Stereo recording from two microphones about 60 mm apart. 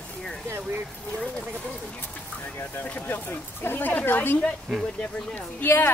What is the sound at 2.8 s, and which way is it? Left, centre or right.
Speech, left.